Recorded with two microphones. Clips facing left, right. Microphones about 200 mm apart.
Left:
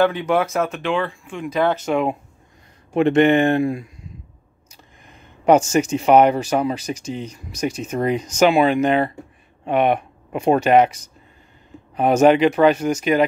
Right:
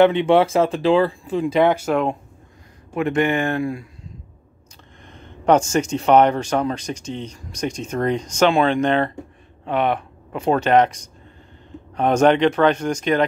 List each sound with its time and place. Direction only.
0.0 s speech: 25° right (ahead or behind)
1.7 s speech: 5° right (ahead or behind)
2.9 s speech: 25° left (ahead or behind)
5.0 s speech: 5° left (ahead or behind)